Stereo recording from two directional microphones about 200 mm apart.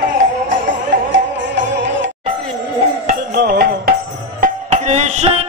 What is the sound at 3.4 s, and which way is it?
Music, 50° right (ahead or behind).